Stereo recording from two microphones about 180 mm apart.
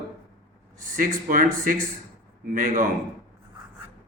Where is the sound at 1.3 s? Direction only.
50° right (ahead or behind).